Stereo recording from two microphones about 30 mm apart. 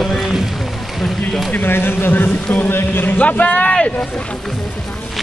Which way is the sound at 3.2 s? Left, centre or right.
Left.